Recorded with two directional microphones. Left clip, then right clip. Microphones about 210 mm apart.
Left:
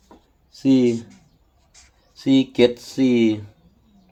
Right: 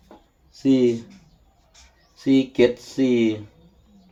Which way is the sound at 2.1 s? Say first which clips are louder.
Left 1 dB; 50° left (ahead or behind).